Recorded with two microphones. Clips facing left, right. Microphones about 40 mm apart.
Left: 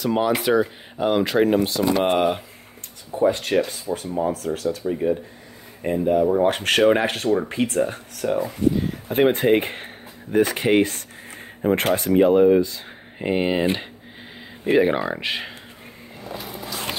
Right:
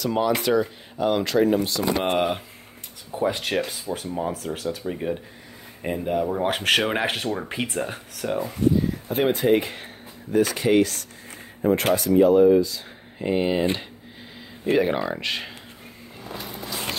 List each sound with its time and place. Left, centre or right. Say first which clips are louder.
0.0 s speech: left 2 dB; centre
1.4 s speech: left 2 dB; left
2.0 s speech: left 3 dB; centre
3.3 s speech: left 5 dB; centre
3.7 s speech: left 3 dB; centre
9.1 s speech: left 3 dB; left
14.6 s speech: left 3 dB; centre
16.3 s walk: left 1 dB; centre